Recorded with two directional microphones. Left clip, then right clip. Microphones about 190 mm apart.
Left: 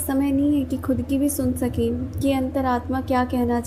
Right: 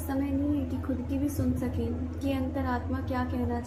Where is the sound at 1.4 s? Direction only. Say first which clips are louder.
Left 9 dB; 40° left (ahead or behind).